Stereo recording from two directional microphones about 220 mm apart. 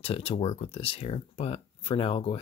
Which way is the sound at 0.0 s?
25° left (ahead or behind).